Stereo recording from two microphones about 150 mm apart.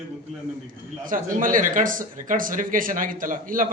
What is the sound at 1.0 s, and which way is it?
Speech, 65° right (ahead or behind).